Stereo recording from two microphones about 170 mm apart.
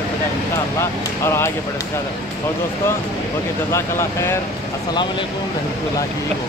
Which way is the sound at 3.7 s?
15° left (ahead or behind).